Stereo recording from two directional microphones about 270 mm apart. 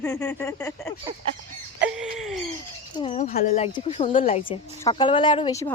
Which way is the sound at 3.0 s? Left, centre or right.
Left.